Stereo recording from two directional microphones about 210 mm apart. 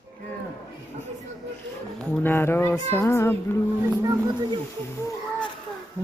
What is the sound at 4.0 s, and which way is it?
Speech, 15° right (ahead or behind).